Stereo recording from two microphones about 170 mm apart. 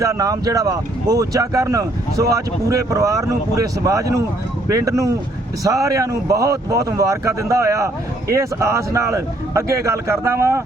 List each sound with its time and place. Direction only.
0.0 s speech: 20° right (ahead or behind)